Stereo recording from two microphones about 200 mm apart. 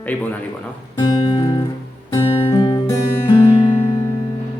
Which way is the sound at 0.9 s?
20° left (ahead or behind).